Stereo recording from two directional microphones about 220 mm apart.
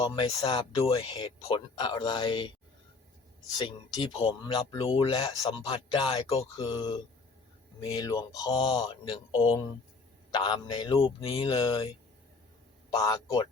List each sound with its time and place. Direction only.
0.0 s speech: 20° left (ahead or behind)
3.6 s speech: 20° left (ahead or behind)
12.9 s speech: 15° left (ahead or behind)